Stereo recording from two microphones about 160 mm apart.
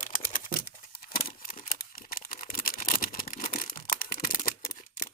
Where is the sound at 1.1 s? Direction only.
65° left (ahead or behind).